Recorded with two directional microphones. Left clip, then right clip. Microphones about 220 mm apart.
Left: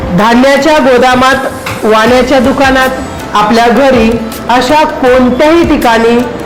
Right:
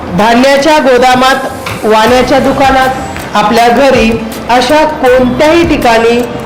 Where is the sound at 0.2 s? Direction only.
25° left (ahead or behind).